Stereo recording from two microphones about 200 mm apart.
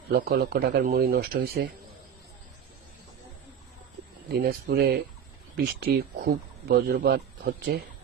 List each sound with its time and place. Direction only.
0.1 s speech: 50° right (ahead or behind)
4.7 s speech: 50° right (ahead or behind)